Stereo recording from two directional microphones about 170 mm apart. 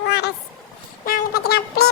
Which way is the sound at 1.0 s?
60° left (ahead or behind).